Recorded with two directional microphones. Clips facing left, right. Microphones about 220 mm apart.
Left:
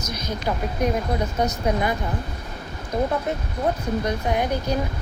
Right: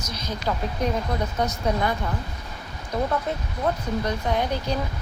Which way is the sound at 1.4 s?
10° left (ahead or behind).